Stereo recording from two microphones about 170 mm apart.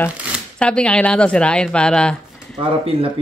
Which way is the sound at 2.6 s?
35° right (ahead or behind).